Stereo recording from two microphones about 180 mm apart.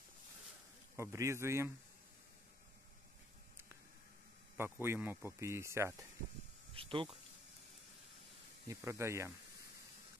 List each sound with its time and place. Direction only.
0.9 s speech: 15° right (ahead or behind)
4.6 s speech: 10° right (ahead or behind)
6.7 s speech: 30° right (ahead or behind)
8.6 s speech: 15° right (ahead or behind)